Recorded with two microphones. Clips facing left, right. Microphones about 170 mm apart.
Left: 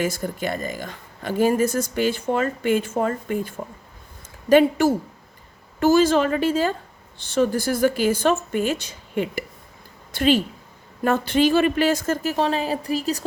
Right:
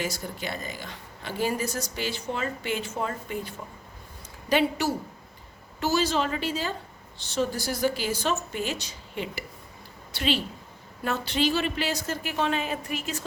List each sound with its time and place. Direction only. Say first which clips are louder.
0.0 s speech: left 7 dB; 50° left (ahead or behind)